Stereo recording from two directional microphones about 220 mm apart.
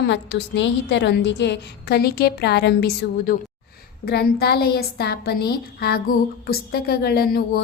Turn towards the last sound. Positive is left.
turn(degrees=45)  # may be behind; listen again after turning